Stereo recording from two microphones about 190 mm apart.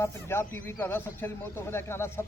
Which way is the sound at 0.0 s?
15° left (ahead or behind).